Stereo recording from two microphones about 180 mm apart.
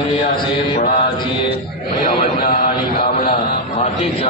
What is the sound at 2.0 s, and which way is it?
Speech, 50° left (ahead or behind).